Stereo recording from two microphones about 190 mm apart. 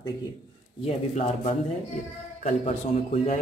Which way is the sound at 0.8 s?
35° left (ahead or behind).